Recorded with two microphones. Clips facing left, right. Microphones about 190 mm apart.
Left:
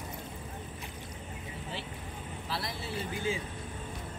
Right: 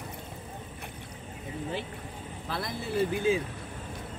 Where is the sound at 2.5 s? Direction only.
50° right (ahead or behind).